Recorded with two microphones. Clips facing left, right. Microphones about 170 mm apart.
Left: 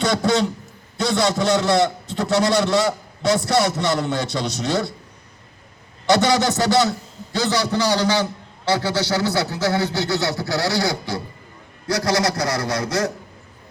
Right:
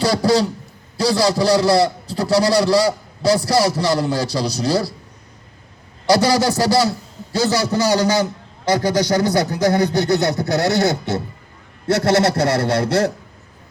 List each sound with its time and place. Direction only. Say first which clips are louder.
0.0 s a sound: right 3 dB; 35° right (ahead or behind)
0.9 s a man's voice: right 3 dB; 35° right (ahead or behind)
6.1 s a man's voice: right 2 dB; 35° right (ahead or behind)
9.9 s a man's voice: right 5 dB; 20° right (ahead or behind)